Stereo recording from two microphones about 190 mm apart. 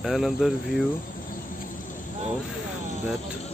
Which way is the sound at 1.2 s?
45° left (ahead or behind).